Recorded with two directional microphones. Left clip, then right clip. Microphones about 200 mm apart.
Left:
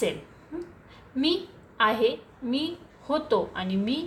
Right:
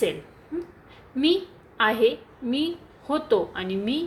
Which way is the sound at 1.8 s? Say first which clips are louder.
Right 2 dB; 20° right (ahead or behind).